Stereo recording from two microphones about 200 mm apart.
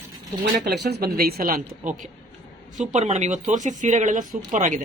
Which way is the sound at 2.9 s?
35° right (ahead or behind).